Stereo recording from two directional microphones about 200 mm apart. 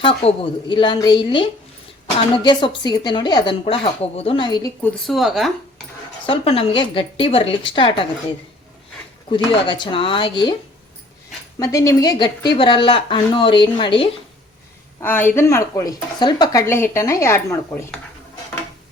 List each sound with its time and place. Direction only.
0.0 s speech: 25° left (ahead or behind)
4.8 s speech: centre (ahead or behind)
6.2 s speech: 30° left (ahead or behind)
9.3 s speech: 25° left (ahead or behind)
11.6 s speech: 15° left (ahead or behind)
15.0 s speech: 10° left (ahead or behind)